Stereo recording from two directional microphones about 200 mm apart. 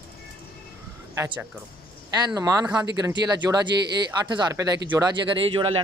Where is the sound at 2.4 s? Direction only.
15° right (ahead or behind).